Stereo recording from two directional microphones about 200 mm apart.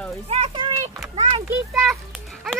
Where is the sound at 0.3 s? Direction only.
30° right (ahead or behind).